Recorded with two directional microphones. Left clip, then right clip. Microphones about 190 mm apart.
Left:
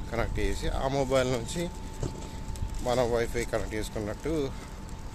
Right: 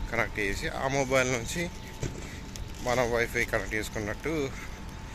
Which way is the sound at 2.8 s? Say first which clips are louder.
Even; 15° left (ahead or behind).